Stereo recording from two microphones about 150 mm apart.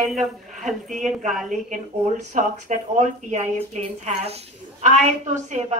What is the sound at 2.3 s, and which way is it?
Speech, 60° right (ahead or behind).